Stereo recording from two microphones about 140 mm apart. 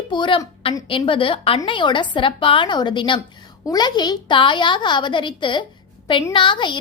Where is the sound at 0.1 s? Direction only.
35° left (ahead or behind).